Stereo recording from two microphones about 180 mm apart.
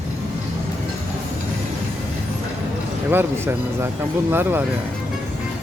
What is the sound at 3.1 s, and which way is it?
Speech, 15° right (ahead or behind).